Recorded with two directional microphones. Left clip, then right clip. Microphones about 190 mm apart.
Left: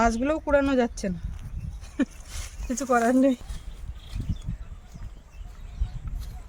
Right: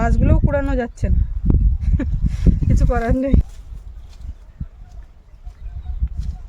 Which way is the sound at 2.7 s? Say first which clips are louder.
Left 1 dB; 15° right (ahead or behind).